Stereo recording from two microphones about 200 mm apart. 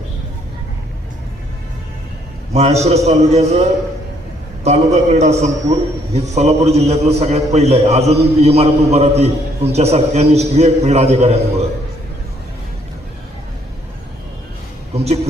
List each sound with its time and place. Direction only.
2.5 s a man's voice: 35° right (ahead or behind)
4.6 s a man's voice: 35° right (ahead or behind)
14.9 s speech: 30° right (ahead or behind)